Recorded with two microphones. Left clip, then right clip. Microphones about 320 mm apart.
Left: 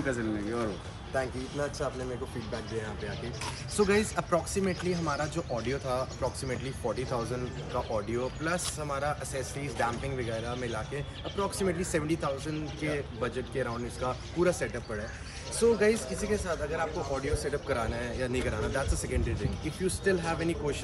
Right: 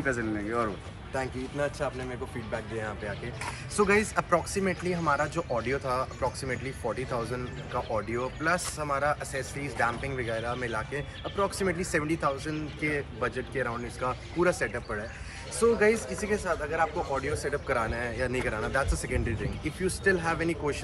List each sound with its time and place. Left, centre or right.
0.0 s speech: centre
1.1 s speech: right
3.7 s speech: centre